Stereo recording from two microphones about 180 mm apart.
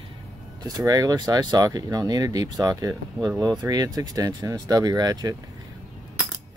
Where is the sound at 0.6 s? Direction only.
20° right (ahead or behind).